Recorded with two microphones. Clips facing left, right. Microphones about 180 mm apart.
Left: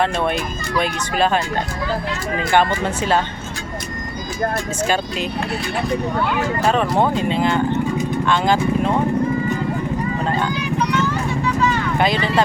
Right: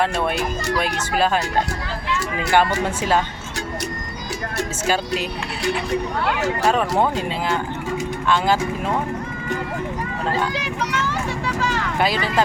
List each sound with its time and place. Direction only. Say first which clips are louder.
0.8 s speech: left 3 dB; 5° right (ahead or behind)
2.5 s speech: left 1 dB; 10° right (ahead or behind)
5.6 s speech: right 3 dB; 75° right (ahead or behind)
6.7 s speech: left 2 dB; 5° right (ahead or behind)
10.5 s vehicle: left 5 dB; 90° right